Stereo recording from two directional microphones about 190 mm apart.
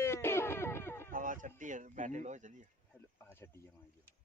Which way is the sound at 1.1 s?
45° right (ahead or behind).